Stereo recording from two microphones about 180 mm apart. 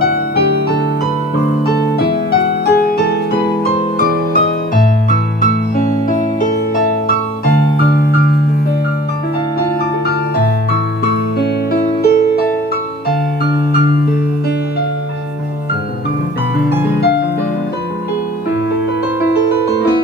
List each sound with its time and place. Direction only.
1.7 s music: 65° left (ahead or behind)
5.4 s music: 50° left (ahead or behind)
12.0 s music: 60° left (ahead or behind)